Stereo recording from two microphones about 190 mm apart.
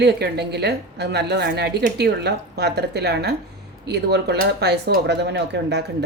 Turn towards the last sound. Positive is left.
turn(degrees=-60)  # may be behind; listen again after turning